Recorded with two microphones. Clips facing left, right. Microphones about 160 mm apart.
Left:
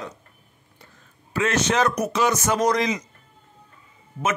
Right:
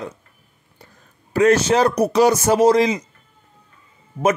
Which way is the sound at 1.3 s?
40° right (ahead or behind).